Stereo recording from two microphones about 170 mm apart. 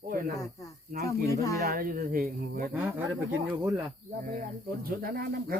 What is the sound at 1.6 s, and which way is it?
Speech, 60° right (ahead or behind).